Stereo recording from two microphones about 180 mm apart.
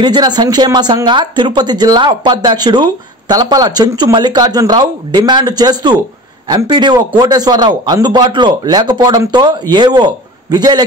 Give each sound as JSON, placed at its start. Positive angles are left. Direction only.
{"t": 0.0, "sound": "speech", "side_deg": -25}